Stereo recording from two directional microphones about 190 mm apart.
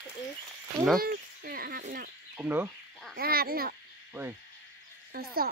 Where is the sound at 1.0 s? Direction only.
50° right (ahead or behind).